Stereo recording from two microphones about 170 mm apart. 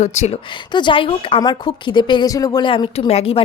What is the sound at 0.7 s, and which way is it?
A woman's voice, 30° left (ahead or behind).